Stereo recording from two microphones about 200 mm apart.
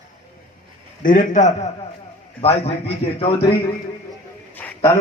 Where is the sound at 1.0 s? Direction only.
40° left (ahead or behind).